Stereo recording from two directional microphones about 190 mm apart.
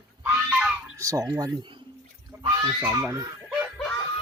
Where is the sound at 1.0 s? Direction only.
15° right (ahead or behind).